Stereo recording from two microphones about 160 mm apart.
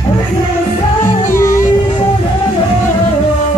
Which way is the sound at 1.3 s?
15° left (ahead or behind).